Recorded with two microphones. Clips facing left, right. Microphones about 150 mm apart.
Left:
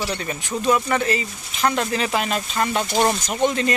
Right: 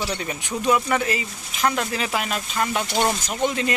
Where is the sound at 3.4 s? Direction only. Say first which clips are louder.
Left 3 dB; 5° right (ahead or behind).